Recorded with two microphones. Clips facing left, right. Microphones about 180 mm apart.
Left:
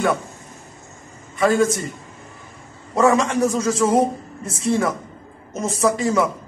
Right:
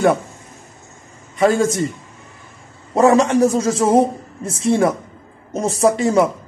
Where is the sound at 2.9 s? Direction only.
30° right (ahead or behind).